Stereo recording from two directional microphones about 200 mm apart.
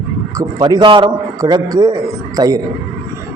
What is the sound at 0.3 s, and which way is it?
A man's voice, 20° right (ahead or behind).